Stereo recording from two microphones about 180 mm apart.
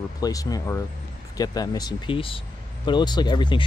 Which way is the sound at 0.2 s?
20° left (ahead or behind).